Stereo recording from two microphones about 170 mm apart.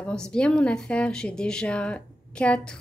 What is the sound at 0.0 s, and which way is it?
A woman's voice, 5° left (ahead or behind).